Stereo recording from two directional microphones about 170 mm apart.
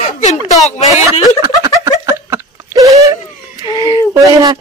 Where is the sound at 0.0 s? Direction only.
45° left (ahead or behind).